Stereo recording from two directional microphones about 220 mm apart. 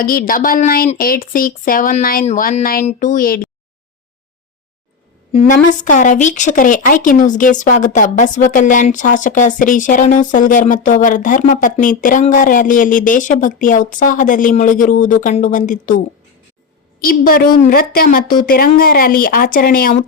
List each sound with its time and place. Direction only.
0.0 s speech: 40° left (ahead or behind)
5.3 s speech: 30° left (ahead or behind)